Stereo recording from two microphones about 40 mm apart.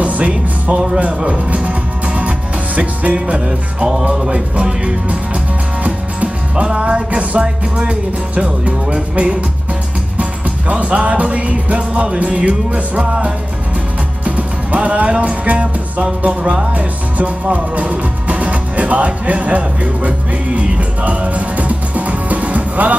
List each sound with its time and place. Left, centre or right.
0.0 s music: right
0.9 s speech: right
3.4 s music: centre
4.3 s music: right
6.5 s music: right
10.7 s music: right
16.7 s music: right